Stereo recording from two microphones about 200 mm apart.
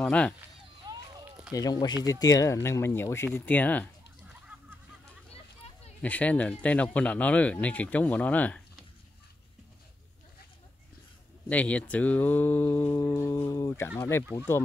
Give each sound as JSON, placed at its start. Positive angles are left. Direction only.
{"t": 0.0, "sound": "speech", "side_deg": 5}
{"t": 0.8, "sound": "run", "side_deg": -20}
{"t": 1.5, "sound": "speech", "side_deg": 20}
{"t": 6.0, "sound": "speech", "side_deg": 5}
{"t": 11.4, "sound": "speech", "side_deg": 5}